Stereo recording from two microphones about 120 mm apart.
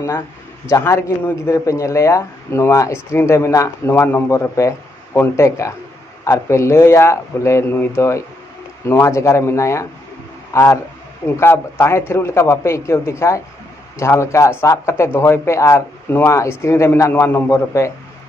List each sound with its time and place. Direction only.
0.7 s a man's voice: 25° left (ahead or behind)